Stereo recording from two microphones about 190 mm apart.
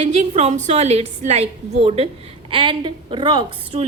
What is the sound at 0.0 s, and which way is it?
A woman's voice, 35° right (ahead or behind).